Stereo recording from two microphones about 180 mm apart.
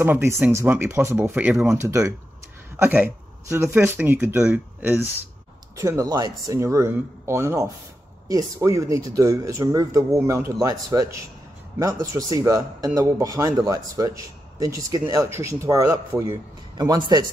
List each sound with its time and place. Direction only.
0.0 s speech: 15° right (ahead or behind)
1.8 s a man's voice: 15° right (ahead or behind)